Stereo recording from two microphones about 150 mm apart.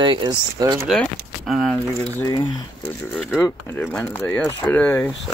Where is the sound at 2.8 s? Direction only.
10° left (ahead or behind).